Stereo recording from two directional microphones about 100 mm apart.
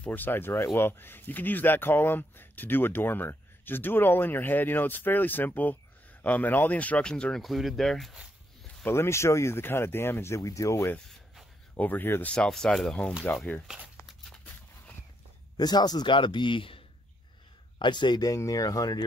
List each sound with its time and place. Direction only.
0.0 s speech: 20° left (ahead or behind); by 8.2 s centre (ahead or behind)
8.8 s speech: 25° left (ahead or behind); by 13.1 s 10° left (ahead or behind)
13.9 s a sound: 5° left (ahead or behind)
15.5 s a man's voice: 45° left (ahead or behind)